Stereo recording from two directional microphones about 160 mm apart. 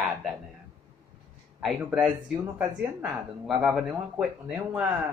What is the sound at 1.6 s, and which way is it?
Speech, 5° right (ahead or behind).